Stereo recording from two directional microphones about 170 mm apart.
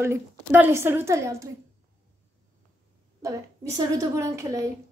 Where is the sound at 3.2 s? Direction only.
20° right (ahead or behind).